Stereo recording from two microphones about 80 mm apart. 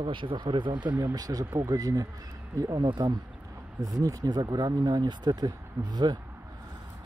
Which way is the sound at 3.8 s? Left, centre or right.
Right.